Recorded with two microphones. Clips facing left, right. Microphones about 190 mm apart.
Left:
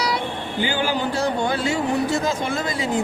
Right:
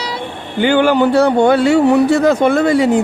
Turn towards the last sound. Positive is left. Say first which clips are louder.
# right 11 dB
turn(degrees=-65)  # may be behind; listen again after turning